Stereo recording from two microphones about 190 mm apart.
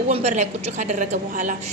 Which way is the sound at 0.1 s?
35° right (ahead or behind).